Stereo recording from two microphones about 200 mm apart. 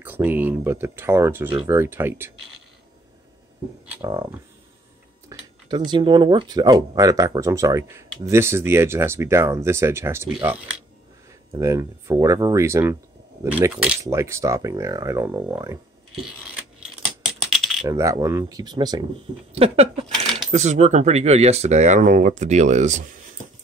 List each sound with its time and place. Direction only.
0.0 s speech: 10° right (ahead or behind)
4.0 s speech: 10° right (ahead or behind)
5.3 s tick-tock: 15° right (ahead or behind)
5.7 s speech: 25° right (ahead or behind)
16.1 s a sound: centre (ahead or behind)
17.2 s typing: centre (ahead or behind)
17.8 s speech: 15° right (ahead or behind)
19.5 s speech: 30° right (ahead or behind)
20.1 s coin: centre (ahead or behind)
20.5 s speech: 35° right (ahead or behind)